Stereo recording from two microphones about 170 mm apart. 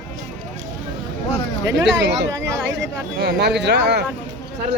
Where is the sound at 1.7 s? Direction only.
90° right.